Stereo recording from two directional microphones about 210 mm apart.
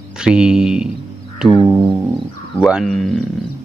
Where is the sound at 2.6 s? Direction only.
Centre (ahead or behind).